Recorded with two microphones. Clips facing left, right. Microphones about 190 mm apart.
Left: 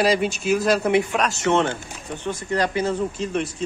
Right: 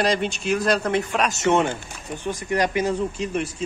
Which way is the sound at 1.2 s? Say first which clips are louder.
Even; 20° right (ahead or behind).